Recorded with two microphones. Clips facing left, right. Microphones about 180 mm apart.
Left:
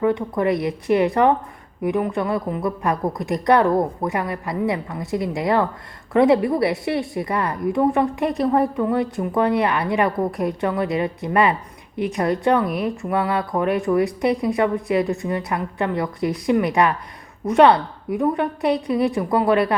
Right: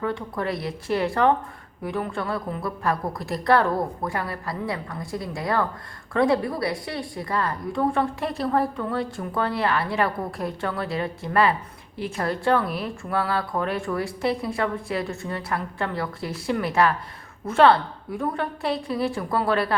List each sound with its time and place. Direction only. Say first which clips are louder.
0.0 s a woman's voice: left 8 dB; 20° left (ahead or behind)
12.5 s speech: left 4 dB; centre (ahead or behind)
12.8 s a woman's voice: left 5 dB; 20° left (ahead or behind)